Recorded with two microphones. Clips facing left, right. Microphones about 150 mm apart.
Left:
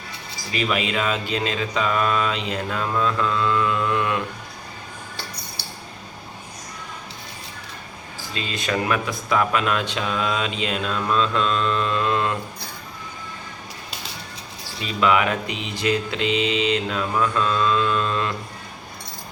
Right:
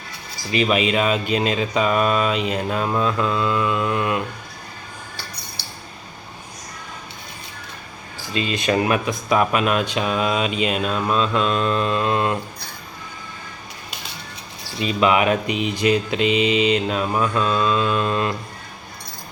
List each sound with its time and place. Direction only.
0.5 s speech: 20° right (ahead or behind)
8.3 s speech: 15° right (ahead or behind)
14.8 s speech: 20° right (ahead or behind)